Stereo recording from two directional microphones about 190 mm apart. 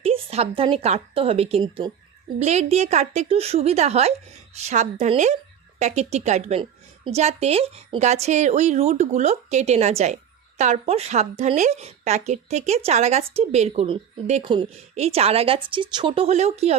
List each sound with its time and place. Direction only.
0.0 s a woman's voice: 30° right (ahead or behind)